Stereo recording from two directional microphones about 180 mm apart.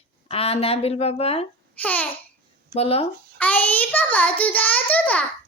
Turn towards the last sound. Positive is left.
turn(degrees=10)  # may be behind; listen again after turning